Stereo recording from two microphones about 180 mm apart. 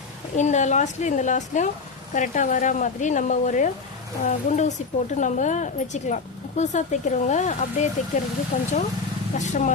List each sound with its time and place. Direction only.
0.3 s speech: 40° left (ahead or behind)